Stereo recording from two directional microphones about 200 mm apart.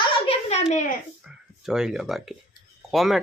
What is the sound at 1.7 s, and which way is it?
A woman's voice, centre (ahead or behind).